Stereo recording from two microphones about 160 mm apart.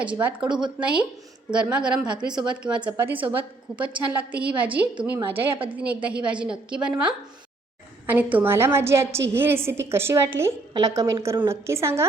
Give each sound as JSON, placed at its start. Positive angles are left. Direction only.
{"t": 0.0, "sound": "a woman's voice", "side_deg": -10}
{"t": 8.0, "sound": "a woman's voice", "side_deg": -10}